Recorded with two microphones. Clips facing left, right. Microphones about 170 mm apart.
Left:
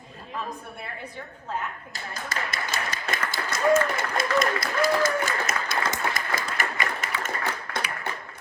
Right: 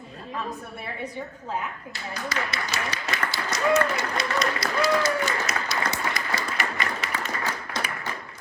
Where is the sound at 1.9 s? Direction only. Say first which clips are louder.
Right 6 dB; 45° left (ahead or behind).